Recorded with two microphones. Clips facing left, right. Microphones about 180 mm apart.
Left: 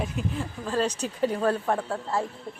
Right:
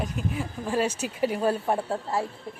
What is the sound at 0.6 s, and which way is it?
A woman's voice, 10° right (ahead or behind).